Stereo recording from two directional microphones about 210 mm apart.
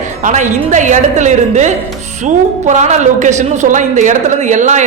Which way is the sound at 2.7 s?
35° right (ahead or behind).